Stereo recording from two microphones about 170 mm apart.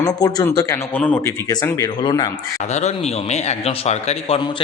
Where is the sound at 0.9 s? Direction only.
10° left (ahead or behind).